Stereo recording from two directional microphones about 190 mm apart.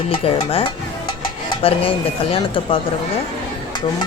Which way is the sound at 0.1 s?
30° left (ahead or behind).